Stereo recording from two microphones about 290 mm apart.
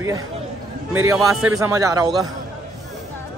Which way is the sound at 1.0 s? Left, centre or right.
Centre.